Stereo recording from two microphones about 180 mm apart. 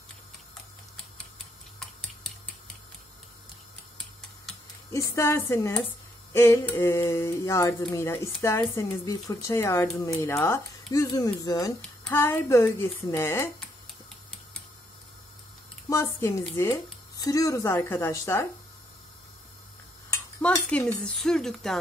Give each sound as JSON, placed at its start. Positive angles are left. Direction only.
{"t": 4.9, "sound": "speech", "side_deg": 15}
{"t": 15.9, "sound": "speech", "side_deg": 15}
{"t": 20.4, "sound": "speech", "side_deg": 5}